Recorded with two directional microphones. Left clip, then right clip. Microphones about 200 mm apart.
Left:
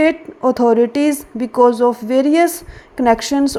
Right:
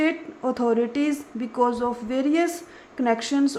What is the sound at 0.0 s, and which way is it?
A woman's voice, 25° left (ahead or behind).